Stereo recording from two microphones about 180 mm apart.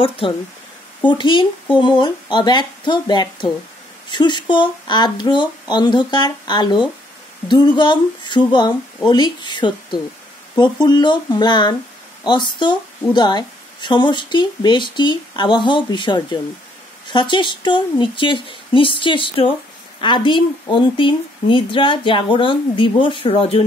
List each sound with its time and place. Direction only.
1.0 s a woman's voice: 25° left (ahead or behind)